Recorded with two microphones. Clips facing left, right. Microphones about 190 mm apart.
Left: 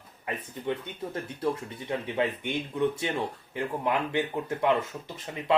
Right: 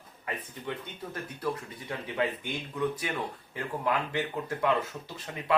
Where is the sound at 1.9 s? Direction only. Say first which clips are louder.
Left 3 dB; 25° left (ahead or behind).